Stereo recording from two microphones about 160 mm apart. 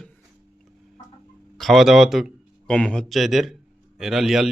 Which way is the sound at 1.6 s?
Centre (ahead or behind).